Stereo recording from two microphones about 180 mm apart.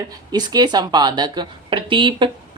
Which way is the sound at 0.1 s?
20° right (ahead or behind).